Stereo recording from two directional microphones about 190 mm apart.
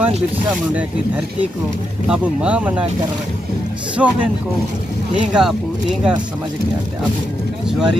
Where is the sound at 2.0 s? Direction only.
5° right (ahead or behind).